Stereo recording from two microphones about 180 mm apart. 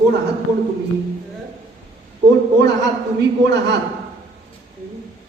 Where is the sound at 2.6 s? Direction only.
70° right (ahead or behind).